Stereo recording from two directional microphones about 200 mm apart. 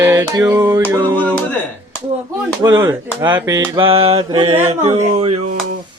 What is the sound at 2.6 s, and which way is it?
Music, 15° right (ahead or behind).